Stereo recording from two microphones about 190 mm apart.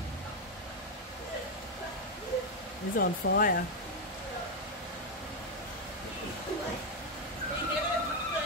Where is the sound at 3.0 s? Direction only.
50° left (ahead or behind).